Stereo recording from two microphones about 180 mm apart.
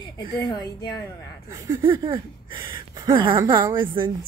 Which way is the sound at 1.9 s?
30° right (ahead or behind).